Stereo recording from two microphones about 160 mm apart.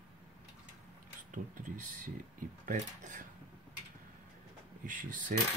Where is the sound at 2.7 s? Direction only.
55° right (ahead or behind).